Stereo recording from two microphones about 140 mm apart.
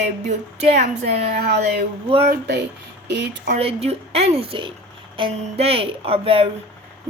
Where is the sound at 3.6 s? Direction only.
45° right (ahead or behind).